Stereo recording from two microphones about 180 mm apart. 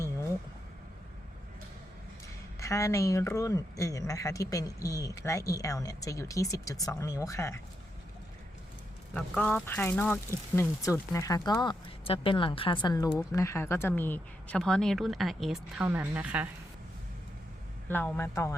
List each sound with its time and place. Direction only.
2.6 s speech: 15° left (ahead or behind)
9.1 s speech: 5° left (ahead or behind); by 16.5 s 10° right (ahead or behind)
17.8 s speech: 10° left (ahead or behind)